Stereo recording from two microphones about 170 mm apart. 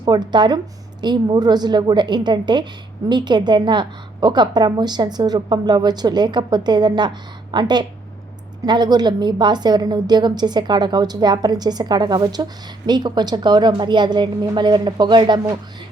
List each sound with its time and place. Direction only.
0.0 s a woman's voice: 25° right (ahead or behind)